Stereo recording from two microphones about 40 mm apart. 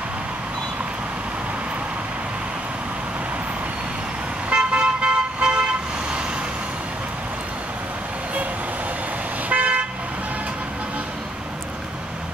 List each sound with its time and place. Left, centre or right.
4.5 s vehicle: right
9.5 s toot: right